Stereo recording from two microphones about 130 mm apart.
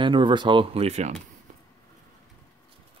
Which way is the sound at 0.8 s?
60° right (ahead or behind).